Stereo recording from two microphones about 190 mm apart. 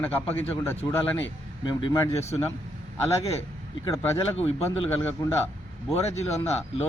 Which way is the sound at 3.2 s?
30° left (ahead or behind).